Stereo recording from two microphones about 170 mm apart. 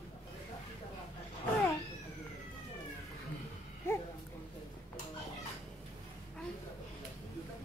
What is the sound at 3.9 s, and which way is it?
Dog, 15° left (ahead or behind).